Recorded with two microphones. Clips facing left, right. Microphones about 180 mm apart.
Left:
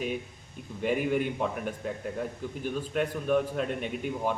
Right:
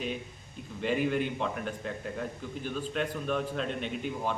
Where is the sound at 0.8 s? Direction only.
10° left (ahead or behind).